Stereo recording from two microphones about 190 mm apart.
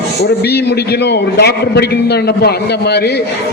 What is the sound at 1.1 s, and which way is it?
A man's voice, 60° left (ahead or behind).